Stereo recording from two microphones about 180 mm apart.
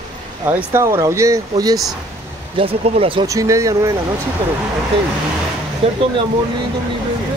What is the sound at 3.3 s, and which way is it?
Speech, 15° right (ahead or behind).